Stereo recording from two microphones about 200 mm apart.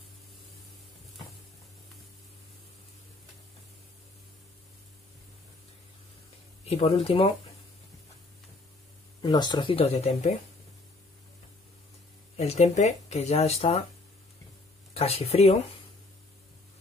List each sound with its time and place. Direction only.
6.6 s speech: 30° left (ahead or behind)
9.2 s speech: 20° left (ahead or behind)
12.4 s speech: 30° left (ahead or behind)
15.0 s speech: 30° left (ahead or behind)